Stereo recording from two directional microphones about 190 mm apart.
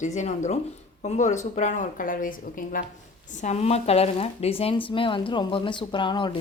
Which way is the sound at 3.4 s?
35° left (ahead or behind).